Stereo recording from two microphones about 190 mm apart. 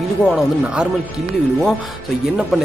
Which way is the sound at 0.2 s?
5° right (ahead or behind).